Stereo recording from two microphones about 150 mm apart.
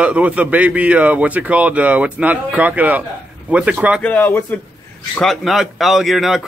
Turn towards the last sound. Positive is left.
turn(degrees=0)  # may be behind; listen again after turning